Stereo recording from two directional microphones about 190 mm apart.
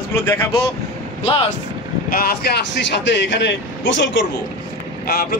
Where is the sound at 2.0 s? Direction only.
50° left (ahead or behind); by 4.2 s 75° left (ahead or behind).